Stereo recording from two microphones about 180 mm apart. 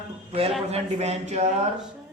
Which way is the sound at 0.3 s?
35° right (ahead or behind).